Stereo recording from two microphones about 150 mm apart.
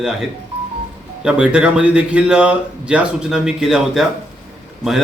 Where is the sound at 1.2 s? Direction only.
5° right (ahead or behind).